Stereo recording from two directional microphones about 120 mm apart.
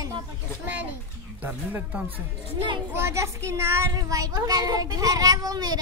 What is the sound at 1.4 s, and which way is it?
A child's voice, 15° right (ahead or behind).